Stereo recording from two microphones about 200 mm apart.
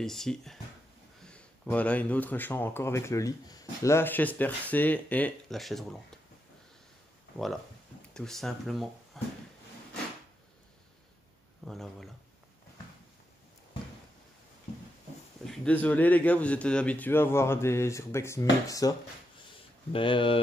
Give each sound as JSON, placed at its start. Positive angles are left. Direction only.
{"t": 0.0, "sound": "speech", "side_deg": 0}
{"t": 8.1, "sound": "speech", "side_deg": 0}
{"t": 11.6, "sound": "speech", "side_deg": 0}
{"t": 15.4, "sound": "speech", "side_deg": 5}